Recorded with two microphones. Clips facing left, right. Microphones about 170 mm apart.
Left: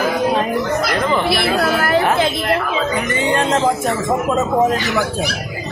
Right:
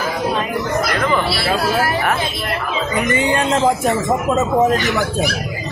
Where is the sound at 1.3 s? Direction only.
55° left (ahead or behind).